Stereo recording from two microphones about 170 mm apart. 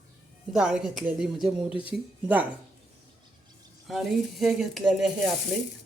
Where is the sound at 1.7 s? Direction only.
30° left (ahead or behind).